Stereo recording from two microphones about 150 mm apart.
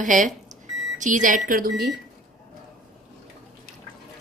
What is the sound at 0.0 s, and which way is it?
A woman's voice, 60° right (ahead or behind).